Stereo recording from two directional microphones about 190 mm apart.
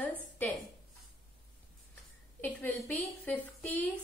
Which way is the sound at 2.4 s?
10° left (ahead or behind).